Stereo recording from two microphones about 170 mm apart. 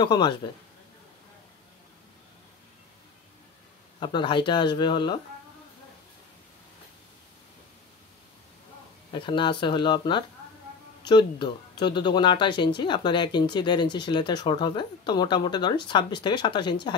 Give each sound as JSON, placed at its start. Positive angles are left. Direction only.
{"t": 0.0, "sound": "speech", "side_deg": 25}
{"t": 4.0, "sound": "speech", "side_deg": 30}
{"t": 9.1, "sound": "speech", "side_deg": 30}